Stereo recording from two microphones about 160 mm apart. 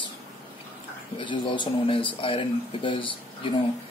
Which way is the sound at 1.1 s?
30° left (ahead or behind).